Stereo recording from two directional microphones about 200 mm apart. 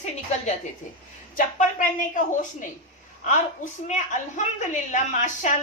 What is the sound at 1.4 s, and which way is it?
A woman's voice, 45° left (ahead or behind).